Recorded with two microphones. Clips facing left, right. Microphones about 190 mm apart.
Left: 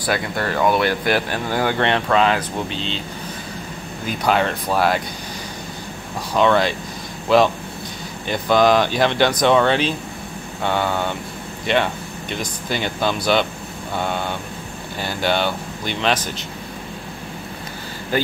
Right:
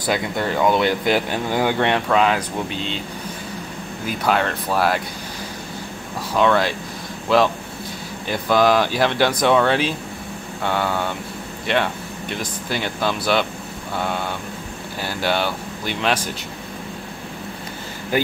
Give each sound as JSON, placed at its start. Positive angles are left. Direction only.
{"t": 0.0, "sound": "speech", "side_deg": -15}
{"t": 4.2, "sound": "speech", "side_deg": 0}
{"t": 6.3, "sound": "speech", "side_deg": 0}
{"t": 18.1, "sound": "speech", "side_deg": -15}